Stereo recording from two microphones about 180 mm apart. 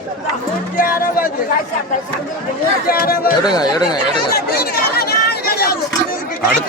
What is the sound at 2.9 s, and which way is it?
Speech, 55° left (ahead or behind).